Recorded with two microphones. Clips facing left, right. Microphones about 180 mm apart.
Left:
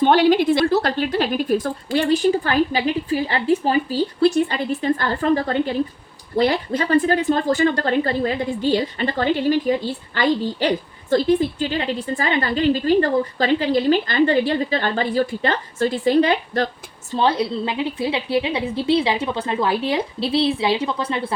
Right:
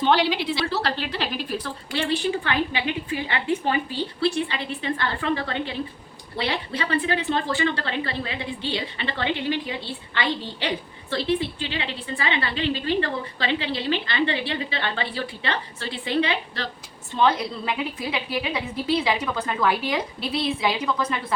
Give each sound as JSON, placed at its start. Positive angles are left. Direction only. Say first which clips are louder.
{"t": 0.0, "sound": "a woman's voice", "louder": "left 7 dB", "side_deg": 50}
{"t": 17.1, "sound": "a woman's voice", "louder": "left 2 dB", "side_deg": 30}